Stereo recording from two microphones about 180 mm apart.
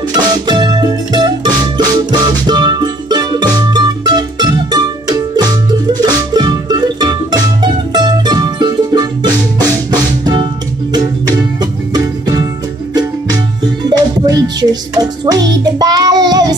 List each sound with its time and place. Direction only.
0.1 s music: 25° right (ahead or behind)
13.8 s music: 20° right (ahead or behind)